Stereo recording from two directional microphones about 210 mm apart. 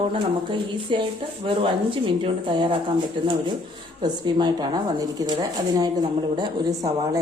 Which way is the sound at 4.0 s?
20° right (ahead or behind).